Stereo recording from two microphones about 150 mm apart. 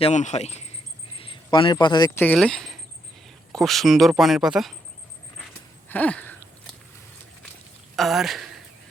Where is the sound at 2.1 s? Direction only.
10° left (ahead or behind).